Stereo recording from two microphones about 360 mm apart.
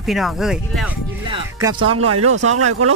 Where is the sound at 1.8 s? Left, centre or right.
Right.